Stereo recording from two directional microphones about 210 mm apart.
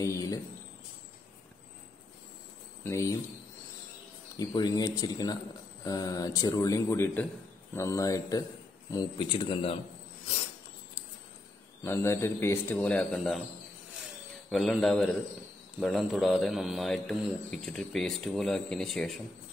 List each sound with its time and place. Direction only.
0.0 s a sound: 15° left (ahead or behind)
2.8 s a man's voice: 15° left (ahead or behind)
4.4 s a man's voice: 20° left (ahead or behind)
11.8 s a man's voice: 10° left (ahead or behind)
14.5 s speech: centre (ahead or behind)